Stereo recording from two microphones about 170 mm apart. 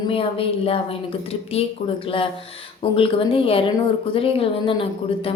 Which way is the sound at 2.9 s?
30° left (ahead or behind).